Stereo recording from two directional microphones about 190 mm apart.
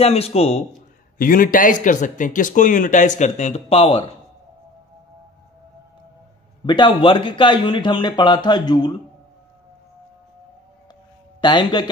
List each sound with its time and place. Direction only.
0.0 s speech: 30° left (ahead or behind)
1.1 s speech: 50° left (ahead or behind); by 4.1 s 30° left (ahead or behind)
6.6 s speech: 25° left (ahead or behind)
11.4 s speech: 25° left (ahead or behind)